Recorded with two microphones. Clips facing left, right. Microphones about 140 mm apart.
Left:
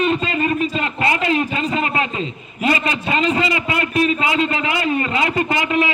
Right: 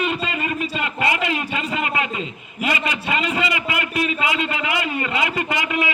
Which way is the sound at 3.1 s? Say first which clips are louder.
Left 4 dB; 35° left (ahead or behind).